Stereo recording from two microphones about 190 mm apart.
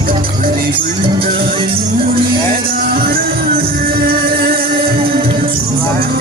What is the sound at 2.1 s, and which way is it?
Music, 50° right (ahead or behind).